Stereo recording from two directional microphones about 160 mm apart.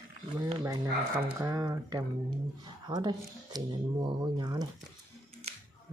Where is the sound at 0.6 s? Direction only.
20° right (ahead or behind).